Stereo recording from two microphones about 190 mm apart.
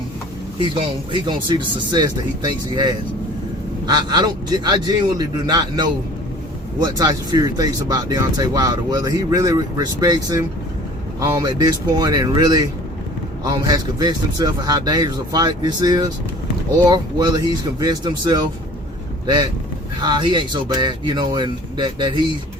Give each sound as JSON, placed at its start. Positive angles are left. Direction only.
{"t": 0.6, "sound": "speech", "side_deg": -25}
{"t": 20.0, "sound": "speech", "side_deg": -25}